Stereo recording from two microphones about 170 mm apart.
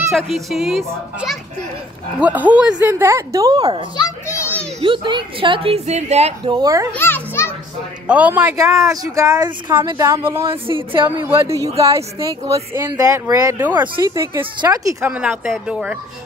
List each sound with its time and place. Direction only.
0.1 s a child's voice: centre (ahead or behind); by 3.8 s 25° right (ahead or behind)
3.9 s children playing: 20° left (ahead or behind)
4.8 s a woman's voice: 30° right (ahead or behind)
6.5 s speech: 20° right (ahead or behind)
6.9 s children playing: 15° left (ahead or behind)
8.1 s a woman's voice: 10° right (ahead or behind)
8.7 s a woman's voice: 20° right (ahead or behind)